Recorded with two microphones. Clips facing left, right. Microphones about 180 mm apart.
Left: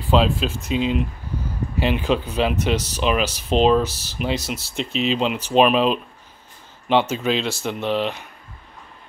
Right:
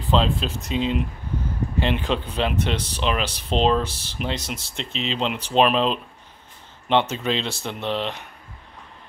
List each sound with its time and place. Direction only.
0.1 s speech: 5° left (ahead or behind)
0.6 s speech: 35° right (ahead or behind)
1.8 s speech: 5° left (ahead or behind)